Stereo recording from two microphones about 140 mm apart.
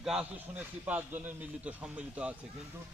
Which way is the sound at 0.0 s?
5° right (ahead or behind).